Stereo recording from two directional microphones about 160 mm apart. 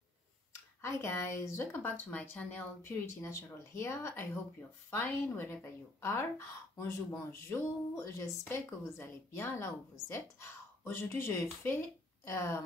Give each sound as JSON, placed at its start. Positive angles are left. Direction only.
{"t": 0.8, "sound": "speech", "side_deg": 15}